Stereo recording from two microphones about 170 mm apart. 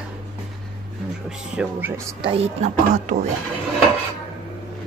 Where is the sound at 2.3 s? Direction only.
35° right (ahead or behind).